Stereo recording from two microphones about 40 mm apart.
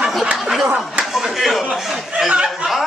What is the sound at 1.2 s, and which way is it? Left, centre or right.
Speech, centre.